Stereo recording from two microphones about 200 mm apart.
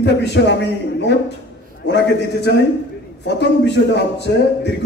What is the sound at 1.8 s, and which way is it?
A man's voice, 60° left (ahead or behind).